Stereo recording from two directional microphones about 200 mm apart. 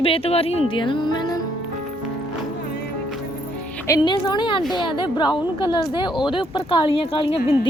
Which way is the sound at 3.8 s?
15° left (ahead or behind).